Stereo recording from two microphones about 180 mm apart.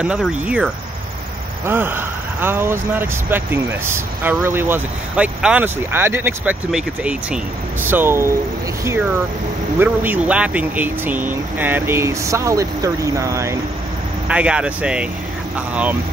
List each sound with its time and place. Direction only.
0.0 s speech: 5° right (ahead or behind)
1.7 s speech: 10° right (ahead or behind)
9.8 s speech: 10° right (ahead or behind)